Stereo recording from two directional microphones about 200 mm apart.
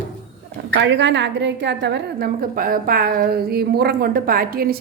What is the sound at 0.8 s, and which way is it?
A woman's voice, 60° right (ahead or behind).